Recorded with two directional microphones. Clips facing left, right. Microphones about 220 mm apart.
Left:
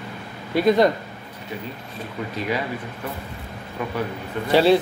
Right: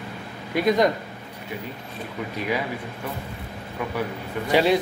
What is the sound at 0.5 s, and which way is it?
Speech, 30° left (ahead or behind).